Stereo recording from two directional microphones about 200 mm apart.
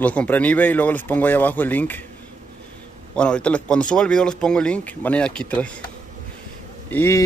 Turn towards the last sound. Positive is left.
turn(degrees=15)  # may be behind; listen again after turning